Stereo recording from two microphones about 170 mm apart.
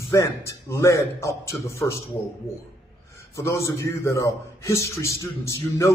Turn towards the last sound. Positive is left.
turn(degrees=15)  # may be behind; listen again after turning